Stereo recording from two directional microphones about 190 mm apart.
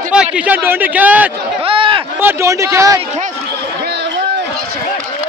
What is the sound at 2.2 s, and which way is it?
Speech, 15° right (ahead or behind).